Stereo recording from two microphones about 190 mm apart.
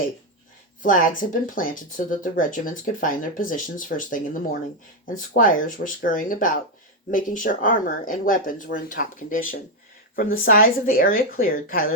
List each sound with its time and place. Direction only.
0.8 s speech: 45° left (ahead or behind)
5.4 s speech: 45° left (ahead or behind)